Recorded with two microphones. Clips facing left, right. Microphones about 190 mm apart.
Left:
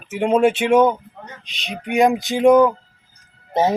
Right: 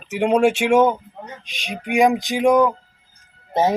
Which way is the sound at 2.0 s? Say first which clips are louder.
Left 1 dB; centre (ahead or behind).